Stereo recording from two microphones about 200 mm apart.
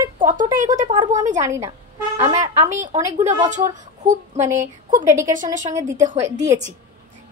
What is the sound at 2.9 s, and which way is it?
A woman's voice, 35° right (ahead or behind).